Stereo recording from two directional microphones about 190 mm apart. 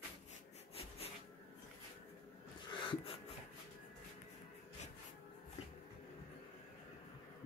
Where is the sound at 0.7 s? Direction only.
30° left (ahead or behind).